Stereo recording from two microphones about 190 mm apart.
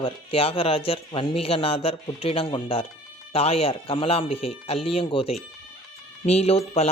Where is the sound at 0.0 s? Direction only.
30° left (ahead or behind).